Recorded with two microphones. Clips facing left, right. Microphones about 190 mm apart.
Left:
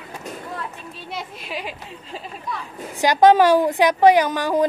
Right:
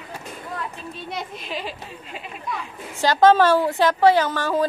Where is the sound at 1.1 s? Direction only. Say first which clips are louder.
Even; 5° left (ahead or behind).